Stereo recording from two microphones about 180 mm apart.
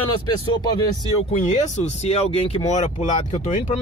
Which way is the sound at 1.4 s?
40° left (ahead or behind).